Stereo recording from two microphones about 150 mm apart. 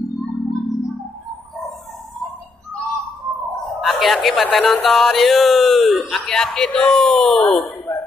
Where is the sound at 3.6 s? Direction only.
Centre (ahead or behind).